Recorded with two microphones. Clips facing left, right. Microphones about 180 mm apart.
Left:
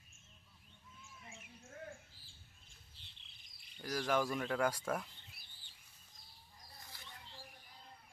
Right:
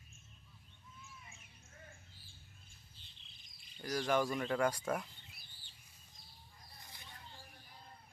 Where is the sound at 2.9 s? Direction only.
70° left (ahead or behind).